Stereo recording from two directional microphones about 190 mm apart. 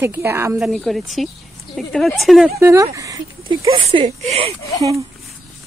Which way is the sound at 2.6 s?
15° right (ahead or behind).